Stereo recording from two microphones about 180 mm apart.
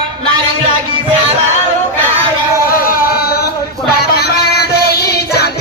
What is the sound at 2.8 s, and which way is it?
Music, 55° left (ahead or behind).